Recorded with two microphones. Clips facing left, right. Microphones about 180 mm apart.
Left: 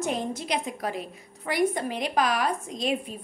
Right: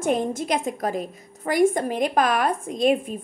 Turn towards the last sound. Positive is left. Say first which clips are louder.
# right 8 dB
turn(degrees=-50)  # may be behind; listen again after turning